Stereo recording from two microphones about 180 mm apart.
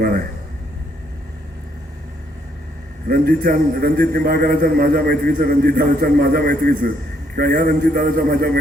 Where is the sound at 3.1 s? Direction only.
55° right (ahead or behind).